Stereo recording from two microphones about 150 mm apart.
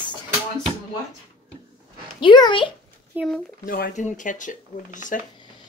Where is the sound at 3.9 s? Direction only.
60° left (ahead or behind).